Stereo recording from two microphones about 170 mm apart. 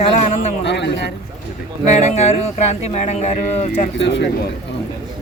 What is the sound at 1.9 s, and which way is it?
Speech, 40° left (ahead or behind).